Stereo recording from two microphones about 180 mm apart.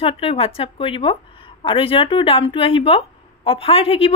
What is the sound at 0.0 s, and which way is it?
A woman's voice, 30° left (ahead or behind).